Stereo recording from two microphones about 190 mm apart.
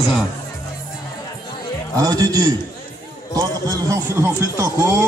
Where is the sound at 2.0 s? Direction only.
20° right (ahead or behind).